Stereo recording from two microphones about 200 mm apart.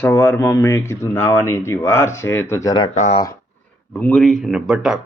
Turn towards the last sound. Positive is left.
turn(degrees=-5)  # may be behind; listen again after turning